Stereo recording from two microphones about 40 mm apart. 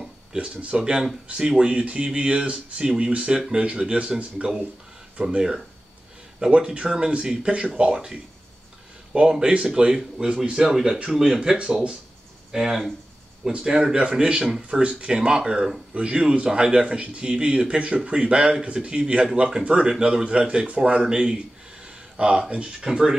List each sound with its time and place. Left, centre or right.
0.4 s speech: right
2.8 s speech: centre
6.5 s speech: right
9.1 s speech: right
9.8 s speech: centre
10.6 s speech: centre
12.5 s speech: centre
16.8 s speech: right
22.8 s speech: centre